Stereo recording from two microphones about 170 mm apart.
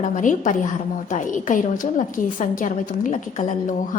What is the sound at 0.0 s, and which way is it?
A woman's voice, 50° left (ahead or behind).